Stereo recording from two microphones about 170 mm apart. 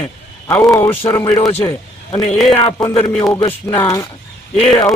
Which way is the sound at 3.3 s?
20° left (ahead or behind).